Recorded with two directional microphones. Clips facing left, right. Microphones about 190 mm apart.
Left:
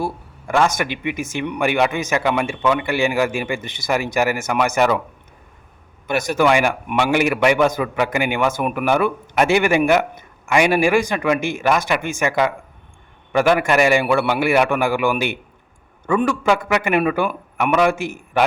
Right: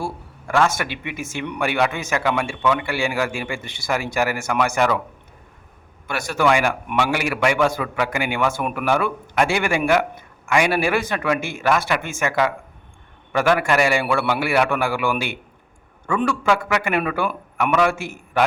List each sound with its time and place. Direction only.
0.0 s a man's voice: 15° left (ahead or behind)
6.1 s a man's voice: 20° left (ahead or behind)